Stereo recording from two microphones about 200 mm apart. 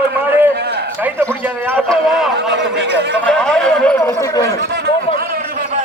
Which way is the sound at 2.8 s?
60° right (ahead or behind).